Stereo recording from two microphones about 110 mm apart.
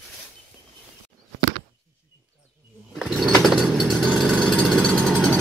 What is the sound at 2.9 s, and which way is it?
Chainsaw, centre (ahead or behind).